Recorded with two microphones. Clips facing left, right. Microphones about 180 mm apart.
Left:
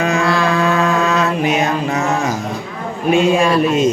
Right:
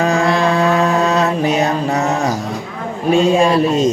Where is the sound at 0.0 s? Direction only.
35° right (ahead or behind).